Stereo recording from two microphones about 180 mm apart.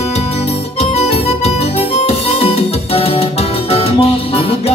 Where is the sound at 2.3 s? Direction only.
35° left (ahead or behind).